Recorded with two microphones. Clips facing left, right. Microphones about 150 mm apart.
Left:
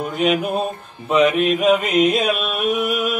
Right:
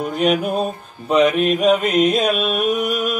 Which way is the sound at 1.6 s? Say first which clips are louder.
Right 1 dB; centre (ahead or behind).